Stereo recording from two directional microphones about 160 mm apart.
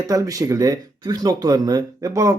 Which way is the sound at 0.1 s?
20° right (ahead or behind).